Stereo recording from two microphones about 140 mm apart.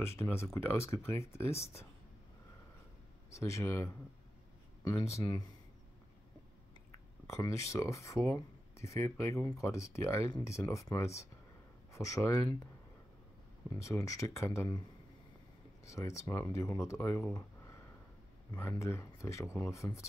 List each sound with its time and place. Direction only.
0.0 s speech: 20° left (ahead or behind)
3.3 s speech: 20° left (ahead or behind)
7.2 s speech: 20° left (ahead or behind)
13.7 s speech: 20° left (ahead or behind)
15.8 s speech: 20° left (ahead or behind)
17.3 s a sound: 20° left (ahead or behind)
18.5 s speech: 15° left (ahead or behind)